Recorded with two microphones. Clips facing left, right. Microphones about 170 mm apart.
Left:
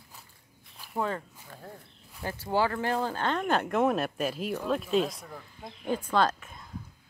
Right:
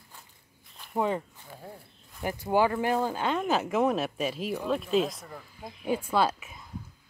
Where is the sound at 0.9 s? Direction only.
15° right (ahead or behind).